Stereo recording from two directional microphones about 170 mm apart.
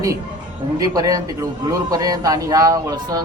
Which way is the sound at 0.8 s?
20° right (ahead or behind).